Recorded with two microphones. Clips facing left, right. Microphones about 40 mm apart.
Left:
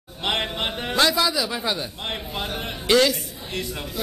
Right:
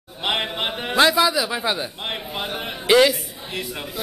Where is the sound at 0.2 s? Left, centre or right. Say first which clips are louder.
Right 1 dB; centre.